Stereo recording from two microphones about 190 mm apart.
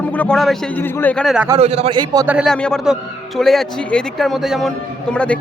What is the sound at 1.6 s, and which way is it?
Speech, 35° right (ahead or behind).